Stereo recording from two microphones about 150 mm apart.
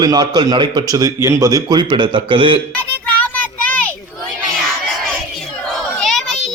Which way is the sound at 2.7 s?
10° left (ahead or behind).